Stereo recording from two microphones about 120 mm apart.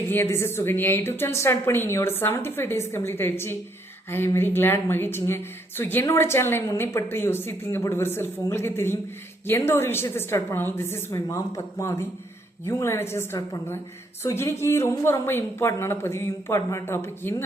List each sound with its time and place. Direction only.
0.1 s speech: 20° left (ahead or behind)